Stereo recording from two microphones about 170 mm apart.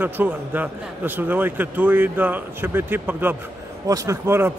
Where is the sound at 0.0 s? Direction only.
10° right (ahead or behind).